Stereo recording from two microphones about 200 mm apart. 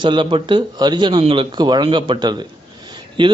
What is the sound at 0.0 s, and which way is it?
A man's voice, 25° right (ahead or behind).